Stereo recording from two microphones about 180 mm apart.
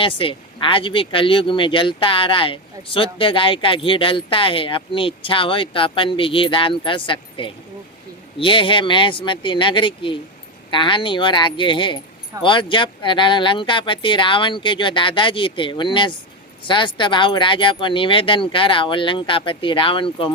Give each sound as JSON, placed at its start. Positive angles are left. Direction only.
{"t": 0.0, "sound": "speech", "side_deg": 30}